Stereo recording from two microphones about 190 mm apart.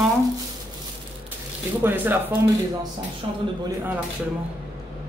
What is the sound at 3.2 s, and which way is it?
Speech, 25° right (ahead or behind).